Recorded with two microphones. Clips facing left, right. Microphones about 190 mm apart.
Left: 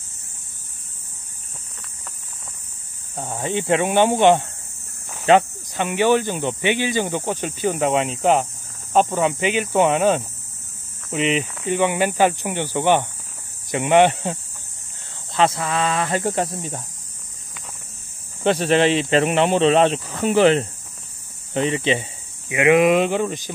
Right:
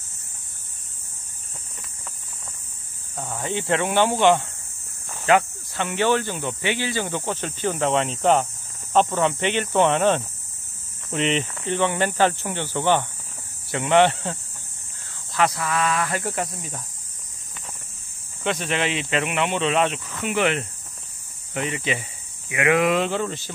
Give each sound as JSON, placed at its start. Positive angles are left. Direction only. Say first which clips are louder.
{"t": 3.2, "sound": "speech", "louder": "left 3 dB", "side_deg": 25}
{"t": 15.3, "sound": "speech", "louder": "left 3 dB", "side_deg": 25}
{"t": 18.4, "sound": "speech", "louder": "left 8 dB", "side_deg": 35}